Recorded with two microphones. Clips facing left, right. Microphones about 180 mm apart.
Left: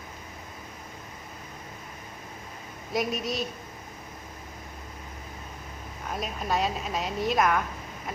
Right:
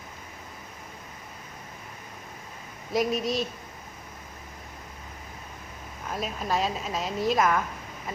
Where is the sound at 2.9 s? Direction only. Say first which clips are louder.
Right 3 dB; centre (ahead or behind).